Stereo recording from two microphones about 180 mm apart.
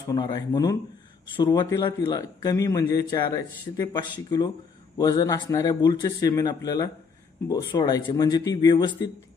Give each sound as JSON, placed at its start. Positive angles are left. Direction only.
{"t": 0.1, "sound": "a man's voice", "side_deg": 20}